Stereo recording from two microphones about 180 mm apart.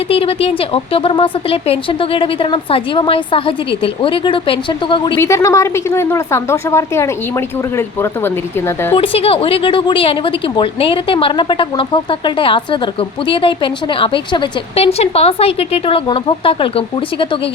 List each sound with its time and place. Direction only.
0.1 s a woman's voice: 30° left (ahead or behind)
5.1 s a woman's voice: 15° left (ahead or behind)
9.0 s a woman's voice: 35° left (ahead or behind)